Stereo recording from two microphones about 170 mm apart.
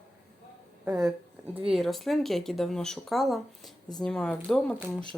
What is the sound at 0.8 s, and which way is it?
Speech, 5° right (ahead or behind).